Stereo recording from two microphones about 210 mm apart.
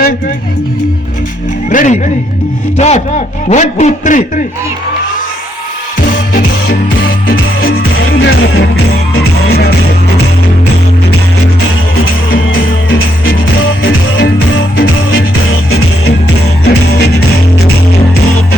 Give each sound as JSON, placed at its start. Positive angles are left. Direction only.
{"t": 1.7, "sound": "a man's voice", "side_deg": 35}
{"t": 6.1, "sound": "music", "side_deg": 45}
{"t": 7.6, "sound": "music", "side_deg": 75}
{"t": 13.8, "sound": "music", "side_deg": 60}
{"t": 16.2, "sound": "music", "side_deg": 50}